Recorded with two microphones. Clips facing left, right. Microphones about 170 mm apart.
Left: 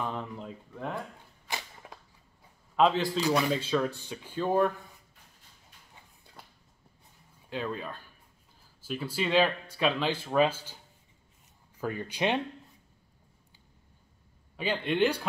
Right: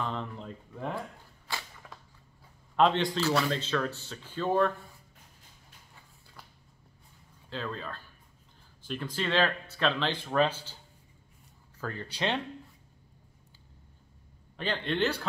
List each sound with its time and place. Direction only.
0.0 s speech: 10° left (ahead or behind)
1.5 s a sound: 20° left (ahead or behind)
2.7 s a man's voice: 5° left (ahead or behind)
3.2 s speech: 15° left (ahead or behind)
7.4 s speech: 15° left (ahead or behind)
11.8 s speech: 15° left (ahead or behind)
14.6 s speech: 10° left (ahead or behind)